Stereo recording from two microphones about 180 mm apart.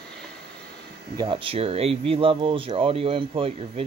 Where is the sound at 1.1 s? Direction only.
25° right (ahead or behind).